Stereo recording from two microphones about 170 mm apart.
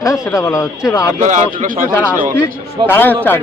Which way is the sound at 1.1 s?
45° right (ahead or behind).